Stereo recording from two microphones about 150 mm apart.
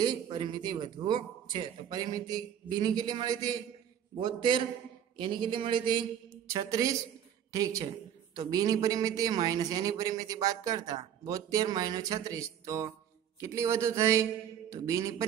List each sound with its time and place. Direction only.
0.0 s a man's voice: 30° right (ahead or behind)